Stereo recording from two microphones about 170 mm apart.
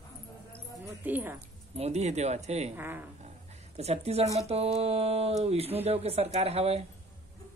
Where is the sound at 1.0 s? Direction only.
10° right (ahead or behind).